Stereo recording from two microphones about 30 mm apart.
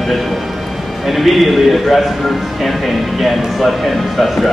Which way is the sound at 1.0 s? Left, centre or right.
Centre.